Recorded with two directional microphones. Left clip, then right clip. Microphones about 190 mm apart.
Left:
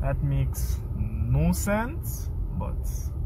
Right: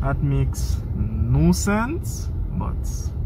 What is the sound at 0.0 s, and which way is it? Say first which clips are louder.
Speech: right 6 dB; 10° right (ahead or behind).